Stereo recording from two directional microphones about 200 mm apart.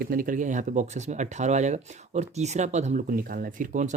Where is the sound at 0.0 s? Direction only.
45° right (ahead or behind).